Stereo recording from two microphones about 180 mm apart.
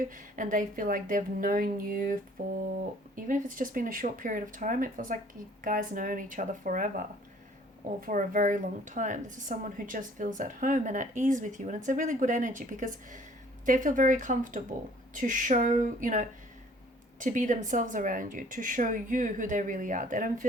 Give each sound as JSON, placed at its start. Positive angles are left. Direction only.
{"t": 0.0, "sound": "a woman's voice", "side_deg": -45}
{"t": 3.2, "sound": "a woman's voice", "side_deg": -45}
{"t": 8.0, "sound": "a woman's voice", "side_deg": -50}